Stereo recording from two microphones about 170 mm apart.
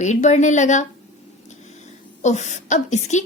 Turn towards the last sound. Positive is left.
turn(degrees=45)  # may be behind; listen again after turning